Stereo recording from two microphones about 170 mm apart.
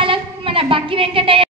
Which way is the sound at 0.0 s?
30° right (ahead or behind).